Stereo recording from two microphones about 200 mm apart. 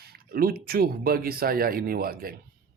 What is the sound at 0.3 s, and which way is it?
Speech, 50° right (ahead or behind).